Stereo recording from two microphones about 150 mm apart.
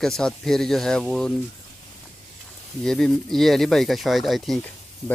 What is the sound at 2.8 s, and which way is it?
Speech, 5° left (ahead or behind).